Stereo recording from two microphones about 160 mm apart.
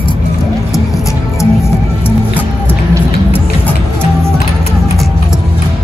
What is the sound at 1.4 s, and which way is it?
Music, 15° left (ahead or behind).